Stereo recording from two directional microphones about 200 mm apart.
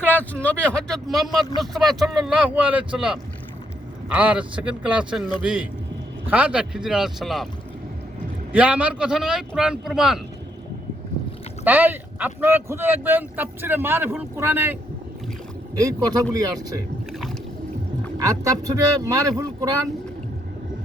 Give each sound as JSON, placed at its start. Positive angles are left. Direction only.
{"t": 0.0, "sound": "speech", "side_deg": 10}
{"t": 8.5, "sound": "speech", "side_deg": -5}
{"t": 11.6, "sound": "speech", "side_deg": -10}
{"t": 17.1, "sound": "water", "side_deg": 0}
{"t": 18.3, "sound": "speech", "side_deg": -15}